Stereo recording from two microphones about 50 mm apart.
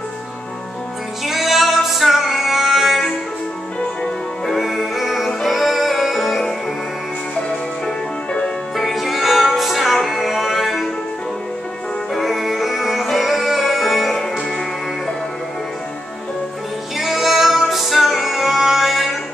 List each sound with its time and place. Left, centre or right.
1.2 s music: centre
4.5 s music: centre
7.4 s music: centre
8.7 s music: centre
12.1 s music: centre
17.0 s music: centre